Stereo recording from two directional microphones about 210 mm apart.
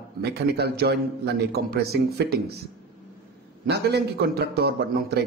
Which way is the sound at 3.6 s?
50° right (ahead or behind).